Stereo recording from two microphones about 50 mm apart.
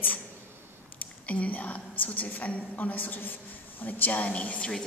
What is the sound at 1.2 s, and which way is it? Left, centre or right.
A woman's voice, left.